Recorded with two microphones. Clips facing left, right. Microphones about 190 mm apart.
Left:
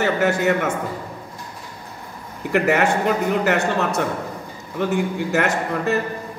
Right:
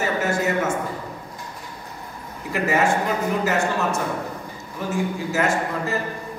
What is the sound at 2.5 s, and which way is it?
A man's voice, 65° left (ahead or behind).